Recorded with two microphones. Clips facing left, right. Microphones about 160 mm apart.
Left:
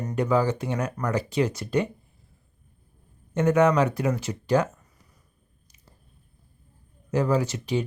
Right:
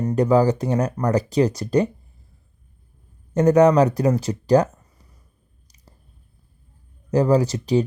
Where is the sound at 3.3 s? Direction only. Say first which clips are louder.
Right 6 dB; 40° right (ahead or behind).